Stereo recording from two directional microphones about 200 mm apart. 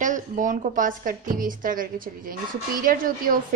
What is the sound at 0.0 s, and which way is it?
A woman's voice, 40° right (ahead or behind).